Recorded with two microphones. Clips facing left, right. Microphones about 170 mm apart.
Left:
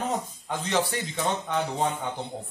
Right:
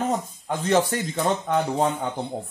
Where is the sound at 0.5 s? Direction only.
50° right (ahead or behind).